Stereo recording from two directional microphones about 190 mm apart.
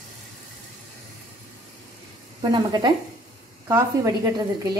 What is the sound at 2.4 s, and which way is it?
A woman's voice, 20° right (ahead or behind).